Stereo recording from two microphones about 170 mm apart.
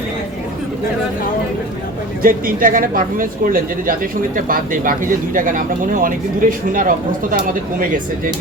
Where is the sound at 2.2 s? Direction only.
55° right (ahead or behind).